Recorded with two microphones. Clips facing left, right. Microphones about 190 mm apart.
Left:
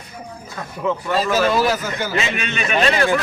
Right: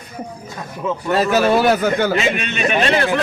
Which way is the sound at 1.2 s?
60° right (ahead or behind).